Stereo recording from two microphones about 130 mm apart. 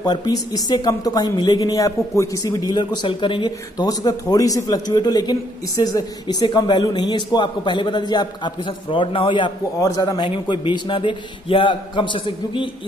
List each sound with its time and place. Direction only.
0.0 s speech: 30° left (ahead or behind)
9.8 s speech: 25° left (ahead or behind)